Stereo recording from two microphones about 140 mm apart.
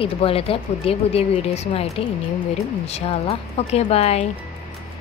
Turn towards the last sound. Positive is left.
turn(degrees=45)  # may be behind; listen again after turning